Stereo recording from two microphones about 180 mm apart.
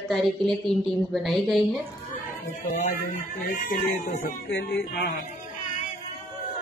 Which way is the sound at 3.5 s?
50° left (ahead or behind).